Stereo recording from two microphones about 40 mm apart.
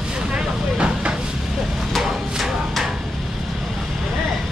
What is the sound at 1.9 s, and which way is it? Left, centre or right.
Music, centre.